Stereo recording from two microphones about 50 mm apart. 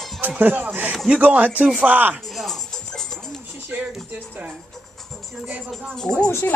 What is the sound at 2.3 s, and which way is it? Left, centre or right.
Music, centre.